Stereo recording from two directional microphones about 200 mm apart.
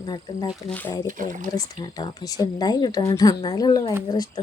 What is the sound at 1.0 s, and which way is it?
Speech, 40° right (ahead or behind).